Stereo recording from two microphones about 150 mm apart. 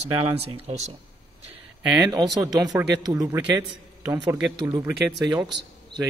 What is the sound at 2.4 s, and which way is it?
A man's voice, 25° right (ahead or behind).